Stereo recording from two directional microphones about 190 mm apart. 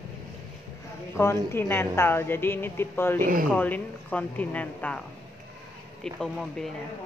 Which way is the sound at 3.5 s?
10° left (ahead or behind).